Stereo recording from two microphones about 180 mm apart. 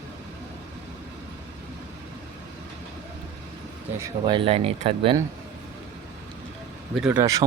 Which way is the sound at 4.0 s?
25° right (ahead or behind).